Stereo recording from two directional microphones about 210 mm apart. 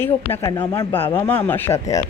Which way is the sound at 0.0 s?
10° left (ahead or behind).